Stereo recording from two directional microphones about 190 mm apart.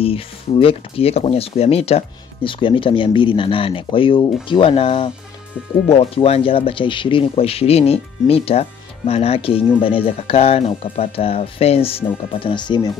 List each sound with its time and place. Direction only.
0.0 s speech: 30° left (ahead or behind)